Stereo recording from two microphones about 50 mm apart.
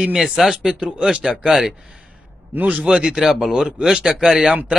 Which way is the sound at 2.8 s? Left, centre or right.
Centre.